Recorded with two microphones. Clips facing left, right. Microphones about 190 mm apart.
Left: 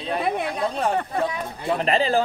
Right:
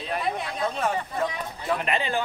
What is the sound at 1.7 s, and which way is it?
Speech, 35° left (ahead or behind).